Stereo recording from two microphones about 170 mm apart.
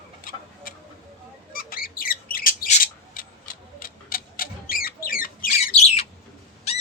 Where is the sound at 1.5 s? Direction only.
60° left (ahead or behind).